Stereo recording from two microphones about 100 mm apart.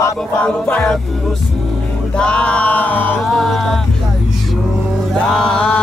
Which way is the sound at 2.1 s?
10° left (ahead or behind).